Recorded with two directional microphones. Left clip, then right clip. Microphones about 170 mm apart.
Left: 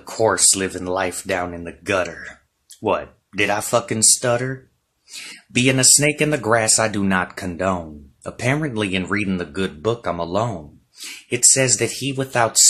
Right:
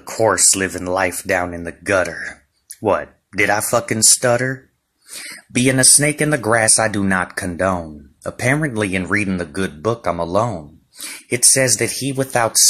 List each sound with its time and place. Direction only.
0.6 s speech: 15° right (ahead or behind)